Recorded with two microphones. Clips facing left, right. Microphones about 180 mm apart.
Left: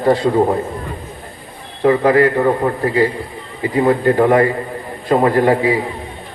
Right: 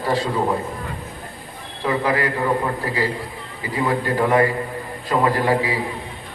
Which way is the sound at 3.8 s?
45° left (ahead or behind).